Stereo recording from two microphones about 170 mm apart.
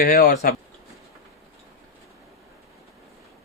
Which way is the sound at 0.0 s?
55° left (ahead or behind).